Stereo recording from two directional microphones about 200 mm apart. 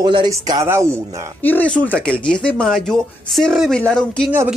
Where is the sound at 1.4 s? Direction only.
10° left (ahead or behind).